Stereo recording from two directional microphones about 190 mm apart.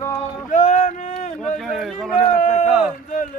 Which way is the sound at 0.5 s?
40° left (ahead or behind).